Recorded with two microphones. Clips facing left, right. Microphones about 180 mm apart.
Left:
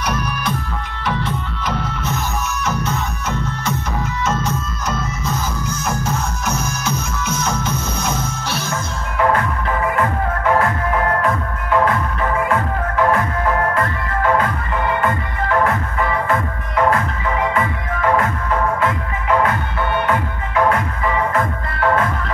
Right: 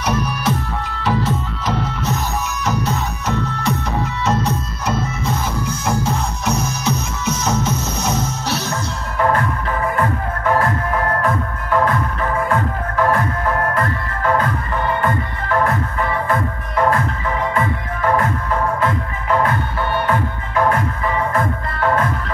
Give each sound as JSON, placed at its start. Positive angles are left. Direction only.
{"t": 0.0, "sound": "music", "side_deg": -25}
{"t": 1.0, "sound": "music", "side_deg": -35}
{"t": 2.6, "sound": "music", "side_deg": -35}